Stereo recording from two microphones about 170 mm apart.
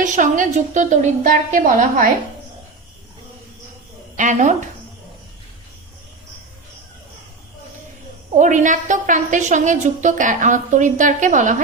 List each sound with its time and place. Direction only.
0.0 s a woman's voice: 50° right (ahead or behind)
4.2 s a woman's voice: 45° right (ahead or behind)
8.4 s a woman's voice: 45° right (ahead or behind)